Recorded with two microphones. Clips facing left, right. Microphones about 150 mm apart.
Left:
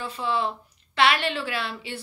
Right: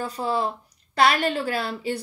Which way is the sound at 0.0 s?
40° right (ahead or behind).